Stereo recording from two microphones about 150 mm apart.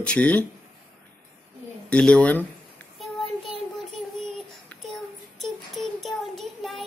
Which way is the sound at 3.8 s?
Centre (ahead or behind).